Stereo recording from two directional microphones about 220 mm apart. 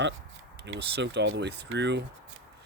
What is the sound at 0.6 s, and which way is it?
Speech, 50° right (ahead or behind).